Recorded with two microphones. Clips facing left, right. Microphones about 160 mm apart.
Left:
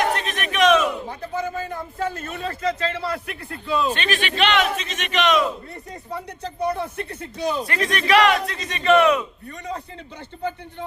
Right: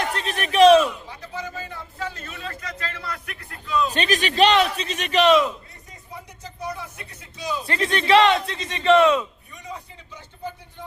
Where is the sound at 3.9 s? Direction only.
40° right (ahead or behind).